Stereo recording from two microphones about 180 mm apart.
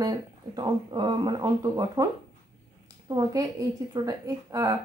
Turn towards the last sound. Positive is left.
turn(degrees=-20)  # may be behind; listen again after turning